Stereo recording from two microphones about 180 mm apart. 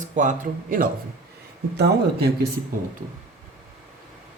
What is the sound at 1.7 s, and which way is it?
Speech, 65° right (ahead or behind).